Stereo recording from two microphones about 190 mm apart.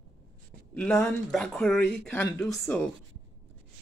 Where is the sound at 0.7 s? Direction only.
5° left (ahead or behind).